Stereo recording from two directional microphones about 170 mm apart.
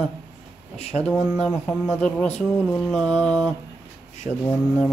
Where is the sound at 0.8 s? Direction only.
40° left (ahead or behind).